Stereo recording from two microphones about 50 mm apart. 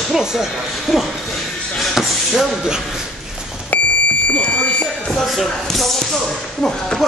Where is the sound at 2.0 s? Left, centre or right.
Centre.